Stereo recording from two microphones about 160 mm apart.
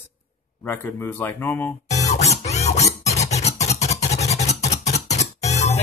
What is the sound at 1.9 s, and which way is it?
Scratch, 45° left (ahead or behind).